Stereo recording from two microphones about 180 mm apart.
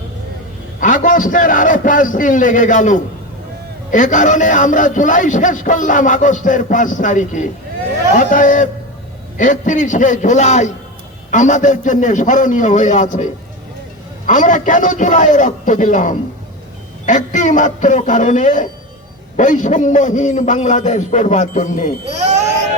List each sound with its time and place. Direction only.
0.8 s a man's voice: 45° left (ahead or behind)
14.3 s a man's voice: 45° left (ahead or behind)
22.2 s a sound: 40° right (ahead or behind)